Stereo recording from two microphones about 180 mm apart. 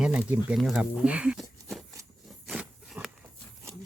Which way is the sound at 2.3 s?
Centre (ahead or behind).